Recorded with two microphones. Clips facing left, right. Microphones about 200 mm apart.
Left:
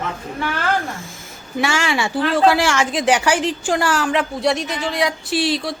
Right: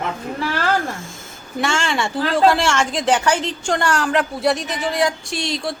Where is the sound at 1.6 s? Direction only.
5° left (ahead or behind).